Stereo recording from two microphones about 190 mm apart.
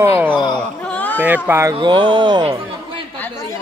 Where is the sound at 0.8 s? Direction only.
5° left (ahead or behind).